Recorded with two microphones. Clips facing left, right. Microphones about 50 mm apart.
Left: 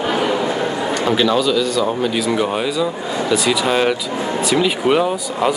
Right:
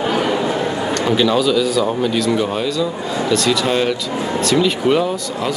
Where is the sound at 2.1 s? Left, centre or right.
Centre.